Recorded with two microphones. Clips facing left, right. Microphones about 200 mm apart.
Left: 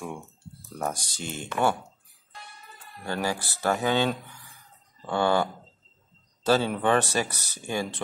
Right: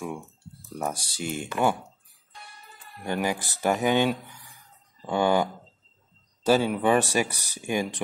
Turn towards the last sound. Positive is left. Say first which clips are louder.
# right 3 dB
turn(degrees=-15)  # may be behind; listen again after turning